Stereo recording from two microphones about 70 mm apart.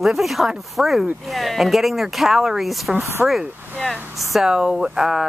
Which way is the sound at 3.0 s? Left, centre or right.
Right.